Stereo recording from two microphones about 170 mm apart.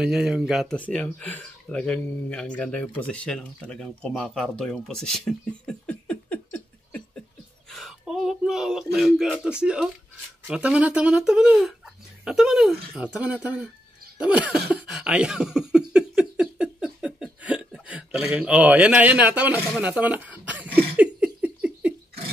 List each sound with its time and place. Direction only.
0.0 s speech: 5° right (ahead or behind)
7.7 s a sound: centre (ahead or behind)
8.9 s speech: 5° right (ahead or behind)
14.1 s a sound: 5° right (ahead or behind)
17.8 s a man's voice: 5° right (ahead or behind)
20.9 s laughter: 5° right (ahead or behind)